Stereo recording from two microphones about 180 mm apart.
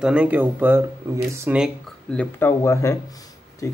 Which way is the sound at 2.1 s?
15° left (ahead or behind).